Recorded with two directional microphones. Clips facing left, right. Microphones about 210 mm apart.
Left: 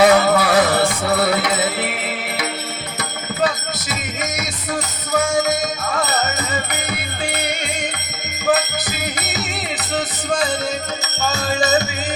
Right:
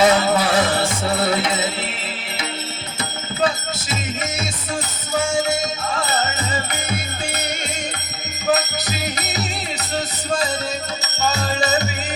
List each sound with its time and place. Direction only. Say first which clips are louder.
0.0 s music: left 3 dB; 25° right (ahead or behind)
5.1 s music: left 2 dB; 30° right (ahead or behind)